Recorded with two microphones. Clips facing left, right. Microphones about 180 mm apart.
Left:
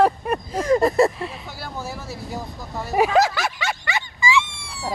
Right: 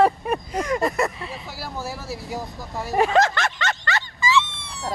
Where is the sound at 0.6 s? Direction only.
30° left (ahead or behind).